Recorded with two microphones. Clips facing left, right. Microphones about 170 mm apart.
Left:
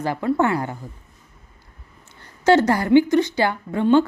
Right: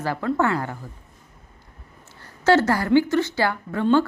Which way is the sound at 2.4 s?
15° left (ahead or behind).